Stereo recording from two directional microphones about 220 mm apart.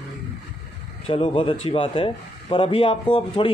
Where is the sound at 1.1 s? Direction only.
25° left (ahead or behind).